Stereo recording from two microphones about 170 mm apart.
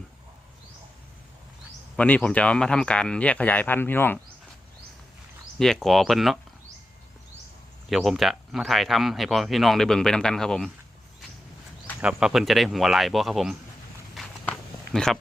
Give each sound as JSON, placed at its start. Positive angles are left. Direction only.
{"t": 2.0, "sound": "speech", "side_deg": 5}
{"t": 5.5, "sound": "speech", "side_deg": 0}
{"t": 7.9, "sound": "speech", "side_deg": 0}
{"t": 11.9, "sound": "speech", "side_deg": -5}
{"t": 14.2, "sound": "walk", "side_deg": 5}